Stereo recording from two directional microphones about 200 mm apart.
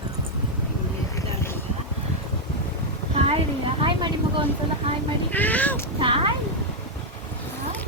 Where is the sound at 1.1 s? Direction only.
10° left (ahead or behind).